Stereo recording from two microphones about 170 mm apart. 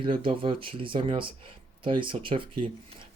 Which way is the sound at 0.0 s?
30° right (ahead or behind).